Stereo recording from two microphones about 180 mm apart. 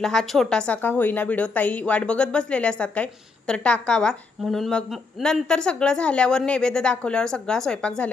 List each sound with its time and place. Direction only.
0.0 s a woman's voice: 5° left (ahead or behind)